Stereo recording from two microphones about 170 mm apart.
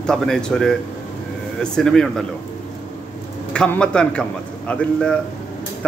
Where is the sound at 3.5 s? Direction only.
5° left (ahead or behind).